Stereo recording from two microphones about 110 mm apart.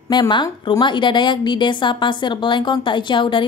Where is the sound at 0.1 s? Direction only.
45° left (ahead or behind).